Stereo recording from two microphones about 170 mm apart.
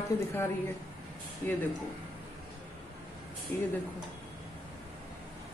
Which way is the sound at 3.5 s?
10° left (ahead or behind).